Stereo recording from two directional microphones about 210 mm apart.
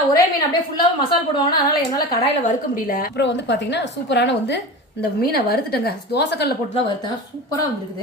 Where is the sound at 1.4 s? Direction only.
20° left (ahead or behind).